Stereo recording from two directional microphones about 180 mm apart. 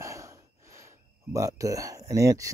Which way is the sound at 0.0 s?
15° right (ahead or behind).